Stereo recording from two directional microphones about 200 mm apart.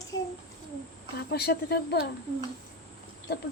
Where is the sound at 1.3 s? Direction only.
55° left (ahead or behind).